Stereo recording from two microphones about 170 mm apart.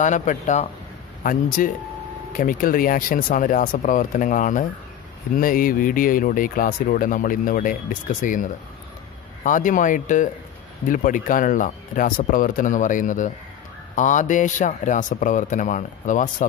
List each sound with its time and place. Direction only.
0.0 s speech: 45° left (ahead or behind)